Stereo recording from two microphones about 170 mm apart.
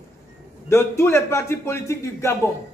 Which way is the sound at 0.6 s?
15° left (ahead or behind).